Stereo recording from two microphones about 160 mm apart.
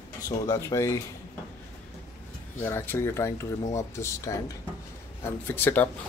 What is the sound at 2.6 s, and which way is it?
Speech, 15° left (ahead or behind).